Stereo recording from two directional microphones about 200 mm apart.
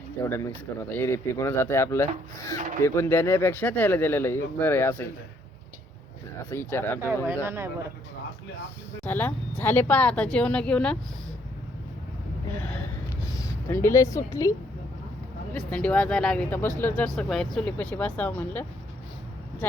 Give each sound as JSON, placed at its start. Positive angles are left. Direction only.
{"t": 0.2, "sound": "speech", "side_deg": 15}
{"t": 6.5, "sound": "speech", "side_deg": 10}
{"t": 7.4, "sound": "speech", "side_deg": -10}
{"t": 9.0, "sound": "speech", "side_deg": 10}
{"t": 13.3, "sound": "speech", "side_deg": 15}
{"t": 15.5, "sound": "speech", "side_deg": 5}